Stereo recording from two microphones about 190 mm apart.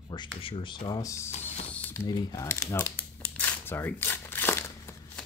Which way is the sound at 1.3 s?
35° left (ahead or behind).